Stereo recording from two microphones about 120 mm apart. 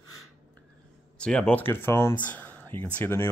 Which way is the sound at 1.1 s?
10° left (ahead or behind).